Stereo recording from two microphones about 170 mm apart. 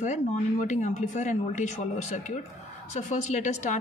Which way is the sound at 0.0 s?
45° left (ahead or behind).